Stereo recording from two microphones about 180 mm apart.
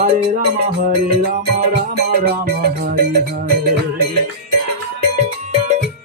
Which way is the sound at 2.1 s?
55° right (ahead or behind).